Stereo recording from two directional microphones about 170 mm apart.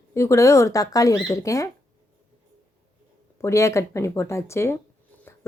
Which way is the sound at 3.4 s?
15° left (ahead or behind).